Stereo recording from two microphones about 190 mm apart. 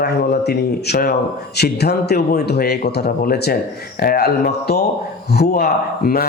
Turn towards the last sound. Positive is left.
turn(degrees=50)  # may be behind; listen again after turning